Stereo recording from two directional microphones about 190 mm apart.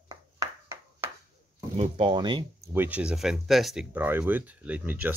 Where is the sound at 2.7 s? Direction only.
10° right (ahead or behind).